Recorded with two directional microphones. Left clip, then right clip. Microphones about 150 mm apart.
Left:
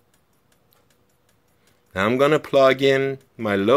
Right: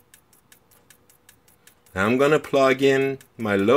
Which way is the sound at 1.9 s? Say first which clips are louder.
Left 1 dB; 35° left (ahead or behind).